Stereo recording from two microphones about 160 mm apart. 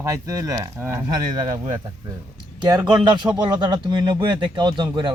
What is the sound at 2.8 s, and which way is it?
Speech, 25° right (ahead or behind).